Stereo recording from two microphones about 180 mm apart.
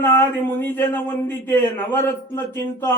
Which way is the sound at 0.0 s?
10° left (ahead or behind).